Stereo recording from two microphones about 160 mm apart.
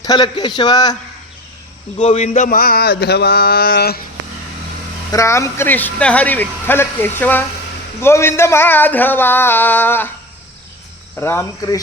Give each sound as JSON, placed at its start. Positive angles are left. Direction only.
{"t": 0.0, "sound": "a man's voice", "side_deg": 25}
{"t": 2.0, "sound": "a sound", "side_deg": 40}
{"t": 5.1, "sound": "speech", "side_deg": 20}
{"t": 11.2, "sound": "speech", "side_deg": 15}